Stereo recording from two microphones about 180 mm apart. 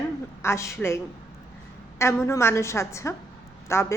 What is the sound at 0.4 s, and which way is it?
Speech, 15° left (ahead or behind).